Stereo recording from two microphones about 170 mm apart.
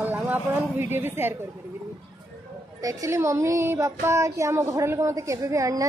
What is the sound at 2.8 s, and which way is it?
Speech, 15° right (ahead or behind).